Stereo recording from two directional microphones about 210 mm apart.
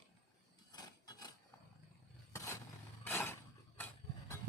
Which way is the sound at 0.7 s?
20° left (ahead or behind).